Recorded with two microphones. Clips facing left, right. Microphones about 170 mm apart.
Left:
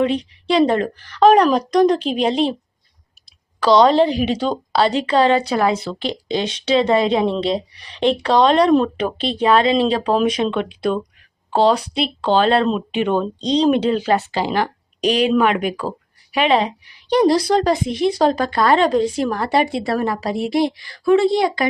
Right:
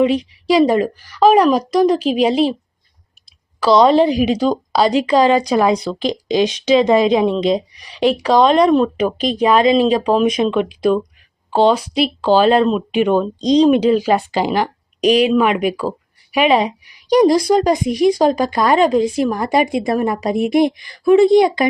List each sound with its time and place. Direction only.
0.4 s a woman's voice: 10° right (ahead or behind)
3.6 s a woman's voice: 10° right (ahead or behind)
13.4 s speech: 30° left (ahead or behind)
13.7 s a woman's voice: 10° right (ahead or behind)